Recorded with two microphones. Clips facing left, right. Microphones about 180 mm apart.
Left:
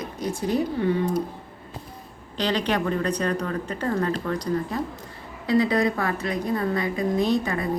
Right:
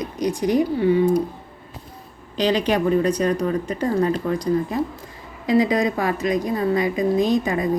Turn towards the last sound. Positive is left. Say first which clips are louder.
# right 4 dB
turn(degrees=-15)  # may be behind; listen again after turning